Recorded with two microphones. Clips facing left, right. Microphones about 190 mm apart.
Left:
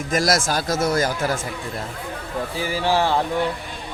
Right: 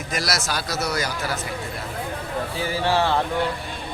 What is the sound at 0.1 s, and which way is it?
Speech, 50° left (ahead or behind).